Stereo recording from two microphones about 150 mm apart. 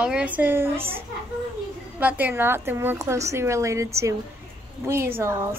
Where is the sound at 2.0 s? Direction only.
10° right (ahead or behind).